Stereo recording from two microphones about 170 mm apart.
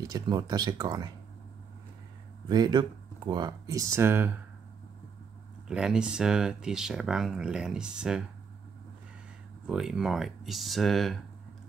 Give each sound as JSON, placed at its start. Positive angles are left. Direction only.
{"t": 0.0, "sound": "speech", "side_deg": -25}
{"t": 2.4, "sound": "speech", "side_deg": -25}
{"t": 5.7, "sound": "speech", "side_deg": -5}
{"t": 9.7, "sound": "speech", "side_deg": -5}